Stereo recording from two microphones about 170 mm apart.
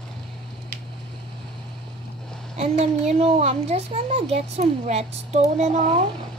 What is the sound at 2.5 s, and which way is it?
A child's voice, 40° right (ahead or behind).